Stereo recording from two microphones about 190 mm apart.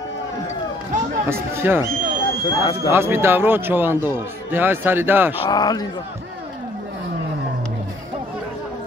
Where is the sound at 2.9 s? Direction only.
15° right (ahead or behind).